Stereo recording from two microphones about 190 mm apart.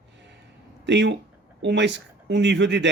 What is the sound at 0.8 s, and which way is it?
A man's voice, 70° right (ahead or behind).